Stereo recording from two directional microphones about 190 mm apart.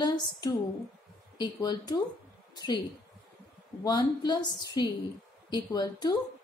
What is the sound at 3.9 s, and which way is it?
A woman's voice, 20° left (ahead or behind).